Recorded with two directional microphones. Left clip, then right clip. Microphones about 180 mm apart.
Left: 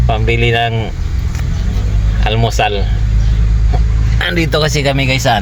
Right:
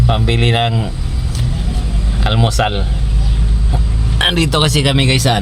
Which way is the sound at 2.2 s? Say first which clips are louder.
Left 2 dB; 10° right (ahead or behind).